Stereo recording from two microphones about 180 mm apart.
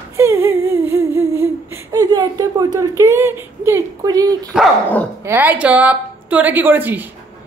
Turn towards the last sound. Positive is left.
turn(degrees=-10)  # may be behind; listen again after turning